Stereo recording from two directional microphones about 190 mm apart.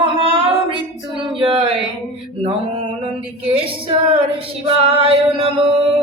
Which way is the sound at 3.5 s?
30° right (ahead or behind).